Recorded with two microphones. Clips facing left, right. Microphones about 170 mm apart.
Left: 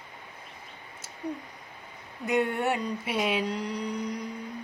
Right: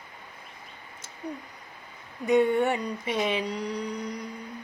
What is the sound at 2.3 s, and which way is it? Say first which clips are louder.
Mantra: right 5 dB; centre (ahead or behind).